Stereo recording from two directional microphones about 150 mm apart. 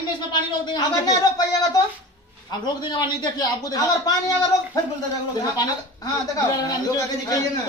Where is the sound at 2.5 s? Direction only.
30° left (ahead or behind).